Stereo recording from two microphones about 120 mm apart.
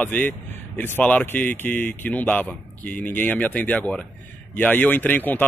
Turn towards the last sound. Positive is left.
turn(degrees=15)  # may be behind; listen again after turning